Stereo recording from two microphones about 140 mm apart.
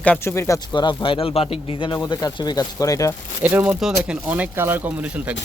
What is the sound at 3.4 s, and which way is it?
Speech, 15° right (ahead or behind).